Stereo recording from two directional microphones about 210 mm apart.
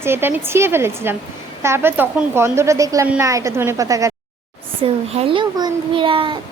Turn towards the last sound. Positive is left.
turn(degrees=-25)  # may be behind; listen again after turning